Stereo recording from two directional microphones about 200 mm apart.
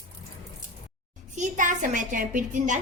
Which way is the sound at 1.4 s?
40° right (ahead or behind).